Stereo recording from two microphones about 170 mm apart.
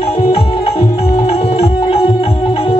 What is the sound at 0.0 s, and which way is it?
Music, 35° left (ahead or behind).